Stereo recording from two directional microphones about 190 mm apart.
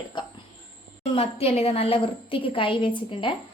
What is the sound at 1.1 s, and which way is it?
A woman's voice, 30° left (ahead or behind).